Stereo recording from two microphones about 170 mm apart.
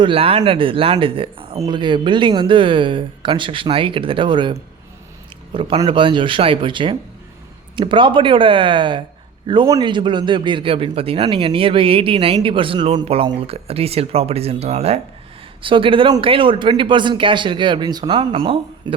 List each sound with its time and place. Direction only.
0.0 s a man's voice: 35° right (ahead or behind)